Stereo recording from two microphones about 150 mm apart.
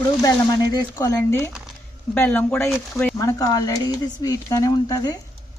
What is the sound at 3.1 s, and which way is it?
Speech, 25° left (ahead or behind).